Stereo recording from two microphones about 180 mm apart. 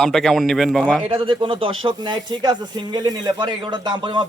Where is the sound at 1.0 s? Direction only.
30° right (ahead or behind).